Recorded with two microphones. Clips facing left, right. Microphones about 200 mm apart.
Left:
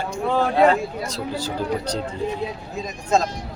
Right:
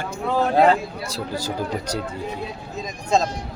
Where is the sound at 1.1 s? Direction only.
10° right (ahead or behind).